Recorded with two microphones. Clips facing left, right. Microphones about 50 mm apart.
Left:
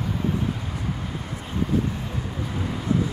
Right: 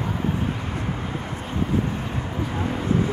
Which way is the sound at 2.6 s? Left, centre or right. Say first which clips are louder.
Right 1 dB; right.